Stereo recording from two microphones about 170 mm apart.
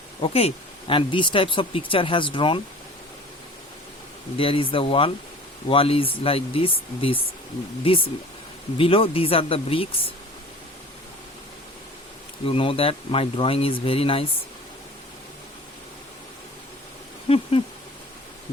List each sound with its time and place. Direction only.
0.2 s speech: 35° left (ahead or behind)
4.4 s speech: 30° left (ahead or behind)
12.5 s speech: 35° left (ahead or behind)
17.2 s owl: 35° left (ahead or behind)